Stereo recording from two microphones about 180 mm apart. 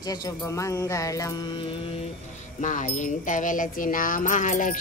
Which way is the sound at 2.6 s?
45° left (ahead or behind).